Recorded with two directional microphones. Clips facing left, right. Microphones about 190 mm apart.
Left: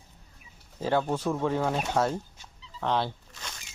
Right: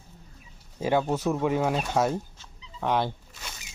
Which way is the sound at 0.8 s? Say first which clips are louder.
Right 2 dB; 15° right (ahead or behind).